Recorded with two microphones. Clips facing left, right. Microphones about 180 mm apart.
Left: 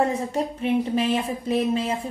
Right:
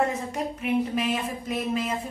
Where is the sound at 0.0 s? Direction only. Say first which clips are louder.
Left 3 dB; 30° left (ahead or behind).